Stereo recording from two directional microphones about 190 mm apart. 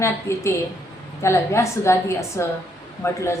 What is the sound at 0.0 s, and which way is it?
A woman's voice, 15° left (ahead or behind).